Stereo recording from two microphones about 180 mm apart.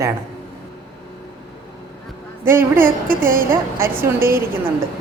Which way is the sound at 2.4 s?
10° right (ahead or behind).